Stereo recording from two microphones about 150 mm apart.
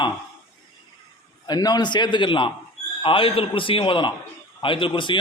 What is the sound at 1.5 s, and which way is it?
A man's voice, 25° left (ahead or behind).